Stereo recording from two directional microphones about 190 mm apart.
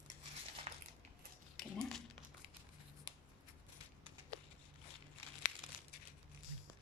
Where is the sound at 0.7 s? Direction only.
35° right (ahead or behind).